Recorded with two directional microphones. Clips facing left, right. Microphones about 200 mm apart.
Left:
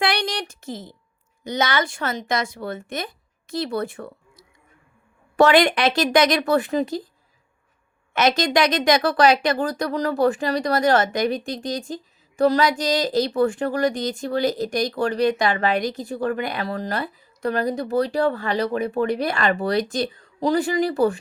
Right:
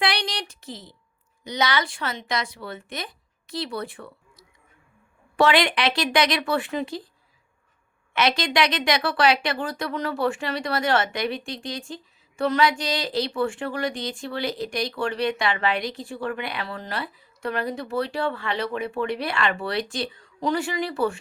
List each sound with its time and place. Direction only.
0.0 s a sound: 45° left (ahead or behind)
1.5 s speech: 50° left (ahead or behind)
8.1 s speech: 45° left (ahead or behind)